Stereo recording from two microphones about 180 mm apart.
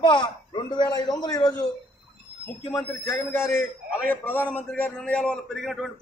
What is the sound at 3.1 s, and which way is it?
Speech, 15° left (ahead or behind).